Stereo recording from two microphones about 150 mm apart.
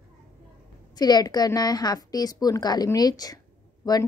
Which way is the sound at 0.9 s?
25° left (ahead or behind).